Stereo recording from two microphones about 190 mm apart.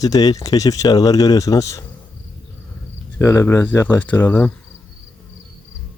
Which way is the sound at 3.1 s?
15° left (ahead or behind).